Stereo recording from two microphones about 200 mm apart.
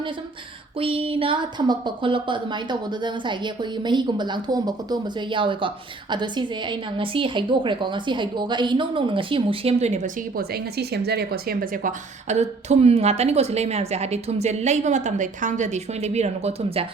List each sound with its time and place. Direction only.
0.8 s a woman's voice: 25° right (ahead or behind)